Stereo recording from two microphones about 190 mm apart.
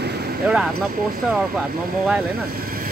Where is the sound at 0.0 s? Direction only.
60° right (ahead or behind).